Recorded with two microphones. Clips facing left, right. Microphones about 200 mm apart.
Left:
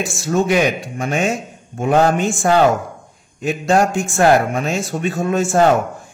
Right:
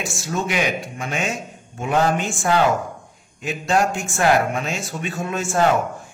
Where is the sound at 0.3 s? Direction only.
45° left (ahead or behind).